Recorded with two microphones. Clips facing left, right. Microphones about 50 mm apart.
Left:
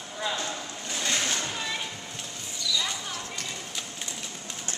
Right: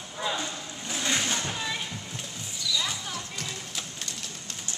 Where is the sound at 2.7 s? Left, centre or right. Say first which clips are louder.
Even; centre.